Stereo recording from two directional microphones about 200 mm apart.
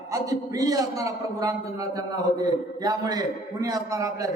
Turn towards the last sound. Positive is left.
turn(degrees=-15)  # may be behind; listen again after turning